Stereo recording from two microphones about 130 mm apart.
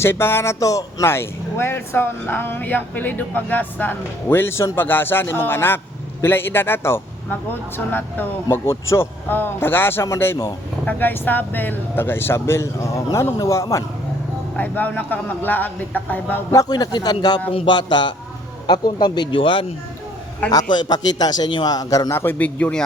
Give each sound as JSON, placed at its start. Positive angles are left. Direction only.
{"t": 0.0, "sound": "speech", "side_deg": 15}
{"t": 14.5, "sound": "speech", "side_deg": 15}
{"t": 16.5, "sound": "a man's voice", "side_deg": 30}